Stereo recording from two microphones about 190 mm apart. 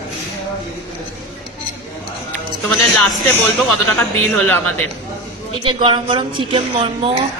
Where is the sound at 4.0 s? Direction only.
10° left (ahead or behind).